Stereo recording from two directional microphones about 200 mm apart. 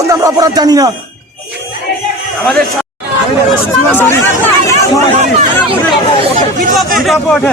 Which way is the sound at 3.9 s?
10° left (ahead or behind).